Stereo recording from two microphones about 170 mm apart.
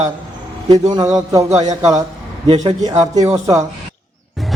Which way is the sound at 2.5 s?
35° right (ahead or behind).